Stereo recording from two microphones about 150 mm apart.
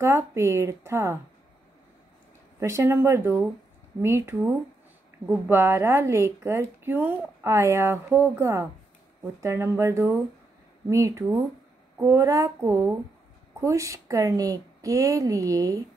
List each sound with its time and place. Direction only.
0.0 s a woman's voice: 20° right (ahead or behind)
2.6 s a woman's voice: 15° right (ahead or behind)